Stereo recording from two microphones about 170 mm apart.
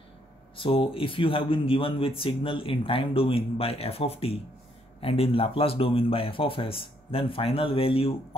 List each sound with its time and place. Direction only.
0.6 s a man's voice: 30° left (ahead or behind)